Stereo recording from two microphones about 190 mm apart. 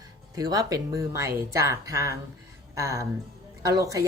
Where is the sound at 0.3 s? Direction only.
20° right (ahead or behind).